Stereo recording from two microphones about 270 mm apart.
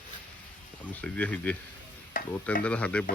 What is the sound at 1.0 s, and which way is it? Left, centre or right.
Speech, centre.